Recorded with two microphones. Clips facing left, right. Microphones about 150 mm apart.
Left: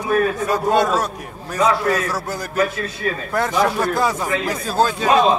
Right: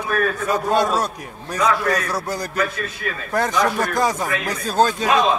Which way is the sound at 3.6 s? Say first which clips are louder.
Left 3 dB; 5° left (ahead or behind).